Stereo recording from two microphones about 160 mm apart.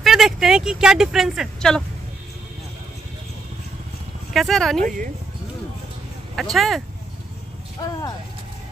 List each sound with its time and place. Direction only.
0.0 s speech: centre (ahead or behind)
4.3 s speech: centre (ahead or behind)
4.8 s speech: 55° right (ahead or behind)
6.3 s speech: centre (ahead or behind)